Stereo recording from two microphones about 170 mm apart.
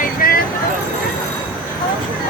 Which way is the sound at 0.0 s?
55° left (ahead or behind).